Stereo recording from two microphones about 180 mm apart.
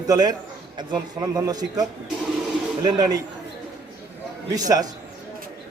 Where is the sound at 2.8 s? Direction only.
20° right (ahead or behind).